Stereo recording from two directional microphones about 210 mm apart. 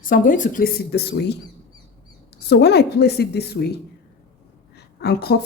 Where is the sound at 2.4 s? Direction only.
50° left (ahead or behind).